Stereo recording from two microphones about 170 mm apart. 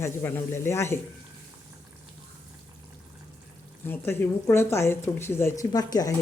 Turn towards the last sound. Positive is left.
turn(degrees=20)  # may be behind; listen again after turning